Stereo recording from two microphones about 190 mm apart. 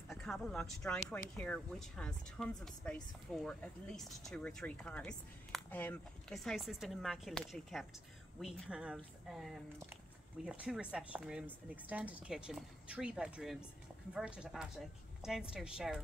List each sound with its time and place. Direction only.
0.1 s speech: centre (ahead or behind)